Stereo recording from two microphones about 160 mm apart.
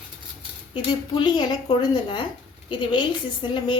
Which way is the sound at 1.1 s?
30° left (ahead or behind).